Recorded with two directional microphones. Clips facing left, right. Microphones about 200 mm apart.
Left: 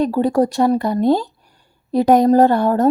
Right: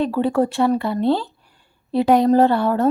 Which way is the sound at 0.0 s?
40° left (ahead or behind).